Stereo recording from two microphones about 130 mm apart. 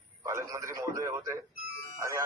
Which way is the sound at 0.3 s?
20° right (ahead or behind).